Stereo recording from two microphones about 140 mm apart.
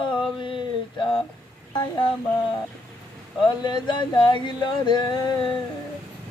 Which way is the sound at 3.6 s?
35° left (ahead or behind).